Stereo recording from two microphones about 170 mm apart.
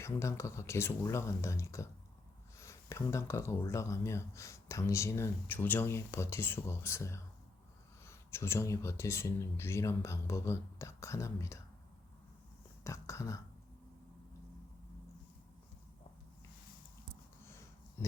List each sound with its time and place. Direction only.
0.0 s speech: 15° left (ahead or behind)
12.8 s speech: 15° left (ahead or behind)